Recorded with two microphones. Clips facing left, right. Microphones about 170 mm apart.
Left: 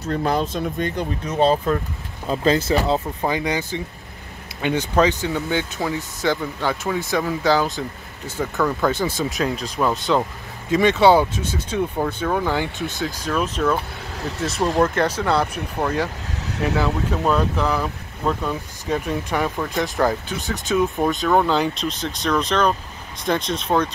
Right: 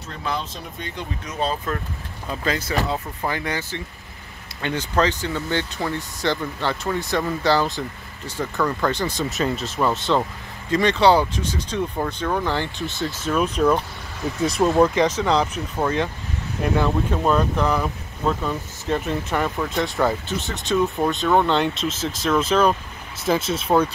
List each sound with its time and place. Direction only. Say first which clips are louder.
0.1 s speech: left 7 dB; 45° left (ahead or behind)
2.2 s speech: left 7 dB; 30° left (ahead or behind)
2.9 s speech: left 5 dB; 20° left (ahead or behind)
13.3 s speech: right 2 dB; 5° right (ahead or behind)